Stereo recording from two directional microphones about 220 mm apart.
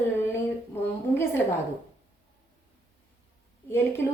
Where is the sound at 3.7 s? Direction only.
10° left (ahead or behind).